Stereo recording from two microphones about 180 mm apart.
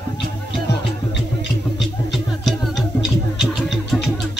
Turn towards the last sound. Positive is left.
turn(degrees=0)  # may be behind; listen again after turning